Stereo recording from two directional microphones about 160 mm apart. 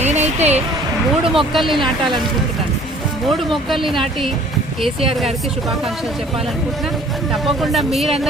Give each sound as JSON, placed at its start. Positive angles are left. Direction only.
{"t": 0.0, "sound": "a sound", "side_deg": -45}
{"t": 1.3, "sound": "speech", "side_deg": 0}
{"t": 3.2, "sound": "speech", "side_deg": 0}
{"t": 7.4, "sound": "speech", "side_deg": 0}